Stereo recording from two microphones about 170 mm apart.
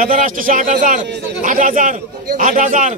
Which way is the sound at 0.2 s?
50° right (ahead or behind).